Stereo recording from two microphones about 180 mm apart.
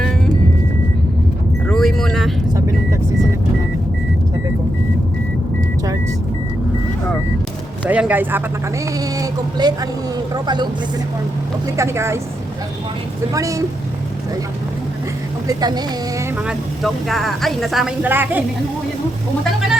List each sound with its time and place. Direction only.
1.6 s a sound: centre (ahead or behind)
2.5 s vehicle: 20° right (ahead or behind)
7.9 s a sound: 10° right (ahead or behind)
9.0 s speech: 20° right (ahead or behind)
11.8 s speech: 15° right (ahead or behind)
13.3 s speech: 20° right (ahead or behind)
15.4 s speech: 20° right (ahead or behind)
16.5 s speech: centre (ahead or behind)